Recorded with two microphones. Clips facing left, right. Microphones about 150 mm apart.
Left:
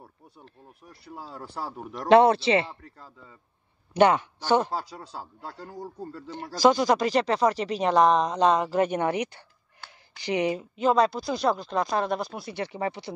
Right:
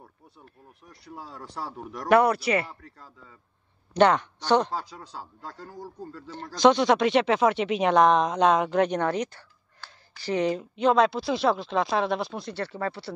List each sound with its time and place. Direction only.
1.2 s a man's voice: 30° left (ahead or behind)
3.9 s speech: 10° left (ahead or behind)
9.8 s a sound: 15° left (ahead or behind)
10.6 s speech: centre (ahead or behind)
12.5 s speech: 15° left (ahead or behind)